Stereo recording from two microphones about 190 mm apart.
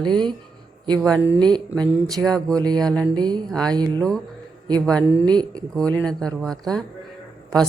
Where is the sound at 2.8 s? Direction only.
5° left (ahead or behind).